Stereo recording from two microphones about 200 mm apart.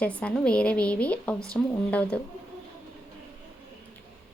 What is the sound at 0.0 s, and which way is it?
Speech, 5° left (ahead or behind).